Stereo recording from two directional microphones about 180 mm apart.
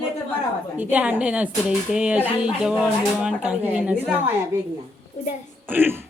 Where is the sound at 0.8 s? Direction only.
10° right (ahead or behind).